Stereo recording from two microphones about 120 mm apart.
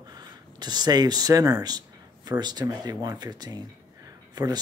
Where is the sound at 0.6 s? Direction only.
35° right (ahead or behind).